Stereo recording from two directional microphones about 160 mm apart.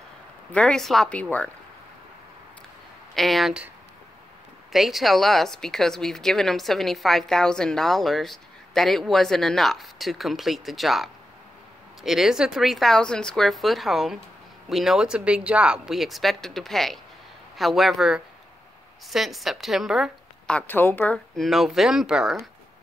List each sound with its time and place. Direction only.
0.5 s a woman's voice: 5° left (ahead or behind)
3.2 s a woman's voice: centre (ahead or behind)
4.7 s a woman's voice: centre (ahead or behind)